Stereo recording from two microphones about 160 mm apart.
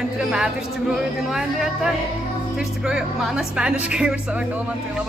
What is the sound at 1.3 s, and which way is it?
Speech, 5° right (ahead or behind).